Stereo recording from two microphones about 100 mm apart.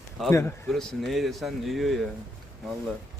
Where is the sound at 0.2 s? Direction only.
Centre (ahead or behind).